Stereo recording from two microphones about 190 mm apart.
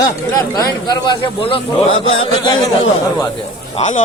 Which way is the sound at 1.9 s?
90° left.